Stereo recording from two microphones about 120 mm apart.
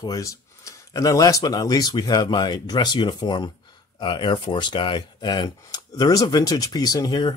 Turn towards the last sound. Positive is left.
turn(degrees=35)  # may be behind; listen again after turning